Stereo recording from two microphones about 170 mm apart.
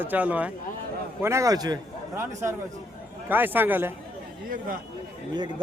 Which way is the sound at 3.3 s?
10° right (ahead or behind).